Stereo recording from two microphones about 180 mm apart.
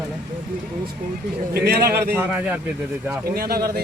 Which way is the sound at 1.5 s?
60° right (ahead or behind).